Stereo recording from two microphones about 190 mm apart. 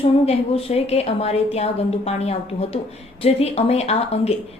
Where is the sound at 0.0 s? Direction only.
30° left (ahead or behind).